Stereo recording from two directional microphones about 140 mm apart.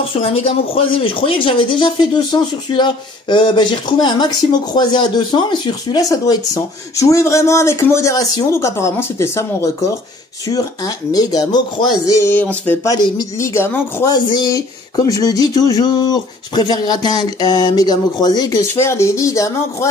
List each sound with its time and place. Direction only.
0.1 s speech: 40° left (ahead or behind); by 9.9 s 20° left (ahead or behind)
11.1 s speech: 30° left (ahead or behind)
12.8 s speech: 30° left (ahead or behind)
14.0 s speech: 30° left (ahead or behind)